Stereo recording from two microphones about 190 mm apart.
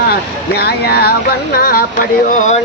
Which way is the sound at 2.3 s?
40° left (ahead or behind).